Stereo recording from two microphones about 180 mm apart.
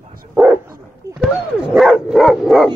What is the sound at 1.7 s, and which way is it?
Dog, centre (ahead or behind).